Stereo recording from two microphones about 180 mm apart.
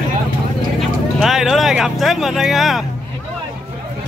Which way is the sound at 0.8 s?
Centre (ahead or behind).